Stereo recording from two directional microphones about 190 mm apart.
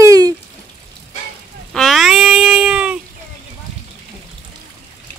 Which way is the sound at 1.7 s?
Centre (ahead or behind).